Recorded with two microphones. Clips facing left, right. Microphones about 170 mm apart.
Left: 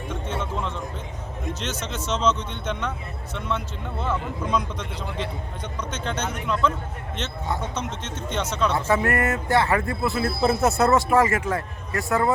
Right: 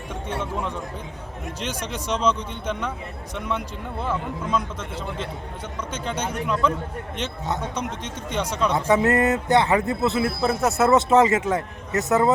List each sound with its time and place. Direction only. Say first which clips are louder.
0.1 s music: right 1 dB; 10° right (ahead or behind)
1.5 s speech: even; 10° right (ahead or behind)
10.4 s speech: left 2 dB; centre (ahead or behind)
10.9 s speech: right 3 dB; 20° right (ahead or behind)